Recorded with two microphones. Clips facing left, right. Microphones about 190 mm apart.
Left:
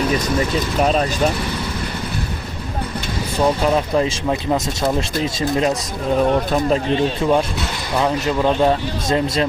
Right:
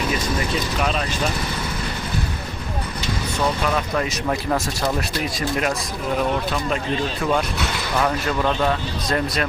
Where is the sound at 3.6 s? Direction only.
25° left (ahead or behind).